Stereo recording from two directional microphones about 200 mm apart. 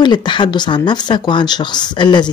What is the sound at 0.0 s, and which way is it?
Speech, 20° left (ahead or behind).